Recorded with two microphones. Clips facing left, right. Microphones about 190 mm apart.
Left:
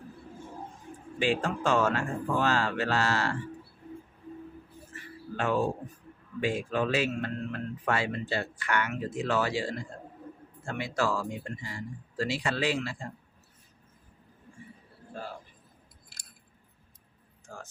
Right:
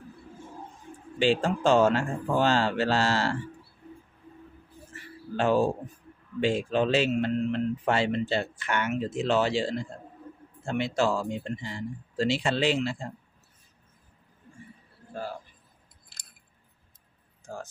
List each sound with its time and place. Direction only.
1.2 s speech: 30° right (ahead or behind)
5.4 s speech: 30° right (ahead or behind)